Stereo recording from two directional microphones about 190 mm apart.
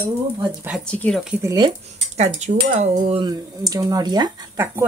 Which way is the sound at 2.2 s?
35° right (ahead or behind).